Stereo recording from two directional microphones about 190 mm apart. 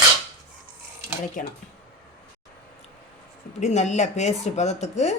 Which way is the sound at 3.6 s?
35° left (ahead or behind).